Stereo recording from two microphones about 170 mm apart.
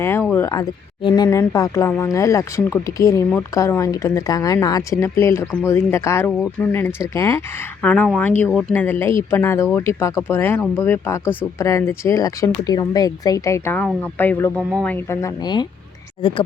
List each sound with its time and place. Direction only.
0.0 s speech: 15° left (ahead or behind)
1.0 s speech: 25° left (ahead or behind)